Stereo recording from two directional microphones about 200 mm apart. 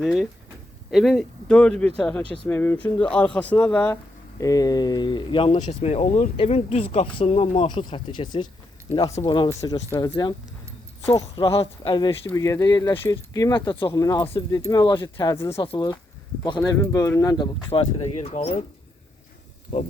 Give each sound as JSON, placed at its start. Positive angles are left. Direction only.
{"t": 0.0, "sound": "speech", "side_deg": 0}
{"t": 4.4, "sound": "speech", "side_deg": 15}
{"t": 11.3, "sound": "speech", "side_deg": 30}